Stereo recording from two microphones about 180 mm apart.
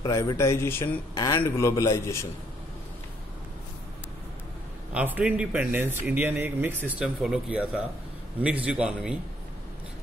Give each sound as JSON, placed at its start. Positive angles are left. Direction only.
{"t": 0.0, "sound": "a man's voice", "side_deg": 20}
{"t": 4.9, "sound": "speech", "side_deg": -10}